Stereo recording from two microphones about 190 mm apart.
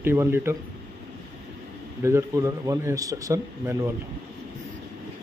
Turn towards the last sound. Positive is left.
turn(degrees=-15)  # may be behind; listen again after turning